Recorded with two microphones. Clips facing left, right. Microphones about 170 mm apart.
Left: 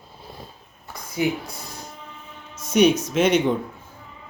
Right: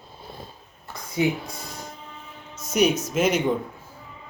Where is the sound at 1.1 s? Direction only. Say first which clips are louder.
Even; 20° right (ahead or behind).